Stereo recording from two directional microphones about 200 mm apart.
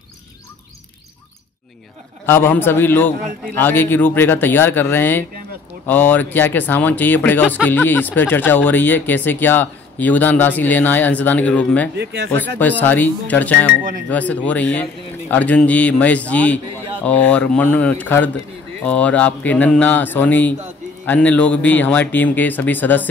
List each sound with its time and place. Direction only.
2.2 s speech: 10° left (ahead or behind)
12.0 s speech: 55° right (ahead or behind)
12.3 s speech: 10° left (ahead or behind)